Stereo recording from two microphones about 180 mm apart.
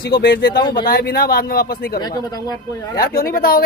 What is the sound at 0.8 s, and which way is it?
Speech, 55° left (ahead or behind).